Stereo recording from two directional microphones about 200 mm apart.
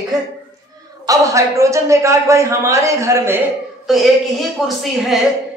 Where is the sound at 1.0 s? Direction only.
15° right (ahead or behind).